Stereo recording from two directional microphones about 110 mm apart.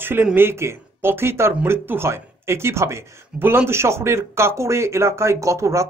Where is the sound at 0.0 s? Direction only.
15° right (ahead or behind).